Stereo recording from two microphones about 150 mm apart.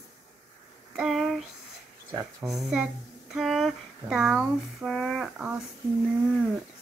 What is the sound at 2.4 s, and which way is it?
Speech, centre (ahead or behind).